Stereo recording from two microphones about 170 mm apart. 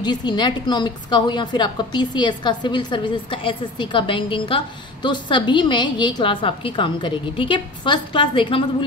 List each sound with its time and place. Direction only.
0.0 s a woman's voice: 25° left (ahead or behind)